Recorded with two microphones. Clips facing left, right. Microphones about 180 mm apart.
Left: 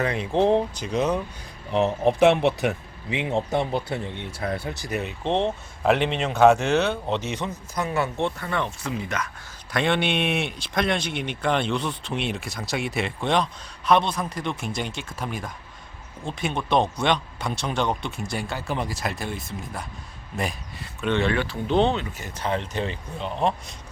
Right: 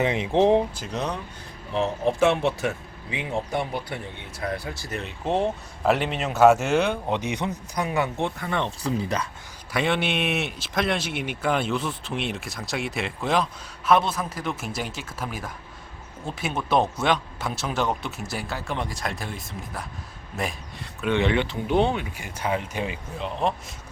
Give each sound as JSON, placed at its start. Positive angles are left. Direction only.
{"t": 0.0, "sound": "speech", "side_deg": -20}
{"t": 0.8, "sound": "speech", "side_deg": 0}
{"t": 2.2, "sound": "speech", "side_deg": 60}
{"t": 2.5, "sound": "speech", "side_deg": 20}
{"t": 5.2, "sound": "speech", "side_deg": -5}
{"t": 8.8, "sound": "speech", "side_deg": -35}
{"t": 9.7, "sound": "speech", "side_deg": -5}
{"t": 21.1, "sound": "speech", "side_deg": -15}